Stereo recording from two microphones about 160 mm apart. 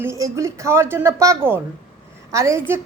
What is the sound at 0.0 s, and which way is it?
Speech, 20° right (ahead or behind).